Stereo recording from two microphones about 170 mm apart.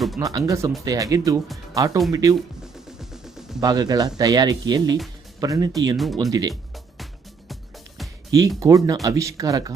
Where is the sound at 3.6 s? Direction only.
25° right (ahead or behind).